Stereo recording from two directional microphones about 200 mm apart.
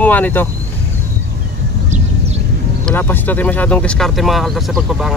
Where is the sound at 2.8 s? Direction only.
10° left (ahead or behind).